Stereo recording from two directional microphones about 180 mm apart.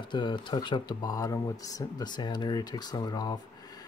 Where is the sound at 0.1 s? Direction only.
25° left (ahead or behind).